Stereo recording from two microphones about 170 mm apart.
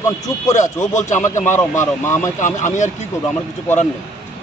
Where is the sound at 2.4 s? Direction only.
45° left (ahead or behind).